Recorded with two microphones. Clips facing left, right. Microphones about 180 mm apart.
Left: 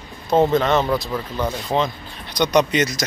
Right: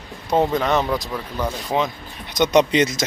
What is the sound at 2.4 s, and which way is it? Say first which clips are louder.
Speech: right 1 dB; 25° right (ahead or behind).